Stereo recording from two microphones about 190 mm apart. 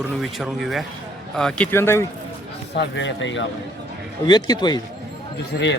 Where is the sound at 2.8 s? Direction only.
70° left (ahead or behind).